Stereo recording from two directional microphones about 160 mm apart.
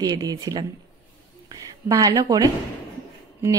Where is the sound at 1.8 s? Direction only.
20° right (ahead or behind).